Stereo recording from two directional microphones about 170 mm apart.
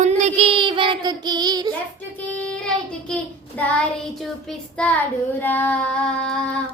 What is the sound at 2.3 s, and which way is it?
Child singing, 5° left (ahead or behind).